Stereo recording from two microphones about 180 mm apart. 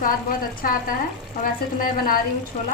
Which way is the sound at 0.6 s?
50° left (ahead or behind).